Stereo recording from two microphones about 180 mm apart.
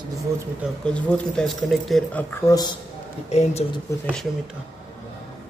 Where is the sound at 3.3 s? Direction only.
40° left (ahead or behind).